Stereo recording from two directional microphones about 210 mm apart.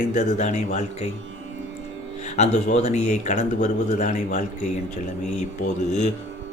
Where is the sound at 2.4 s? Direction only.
35° left (ahead or behind).